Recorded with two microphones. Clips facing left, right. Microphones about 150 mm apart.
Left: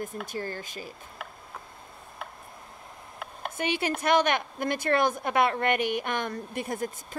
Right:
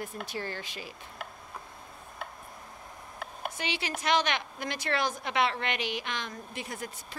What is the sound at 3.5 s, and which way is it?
A woman's voice, 50° left (ahead or behind).